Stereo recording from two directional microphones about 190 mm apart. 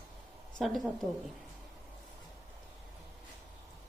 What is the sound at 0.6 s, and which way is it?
Speech, centre (ahead or behind).